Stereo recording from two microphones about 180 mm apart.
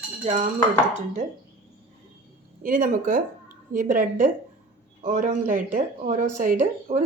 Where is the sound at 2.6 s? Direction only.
50° right (ahead or behind).